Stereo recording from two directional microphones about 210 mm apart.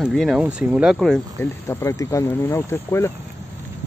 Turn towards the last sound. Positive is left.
turn(degrees=15)  # may be behind; listen again after turning